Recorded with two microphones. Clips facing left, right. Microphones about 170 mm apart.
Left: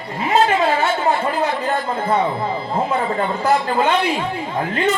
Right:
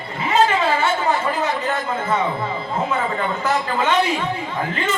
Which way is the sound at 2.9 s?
35° left (ahead or behind).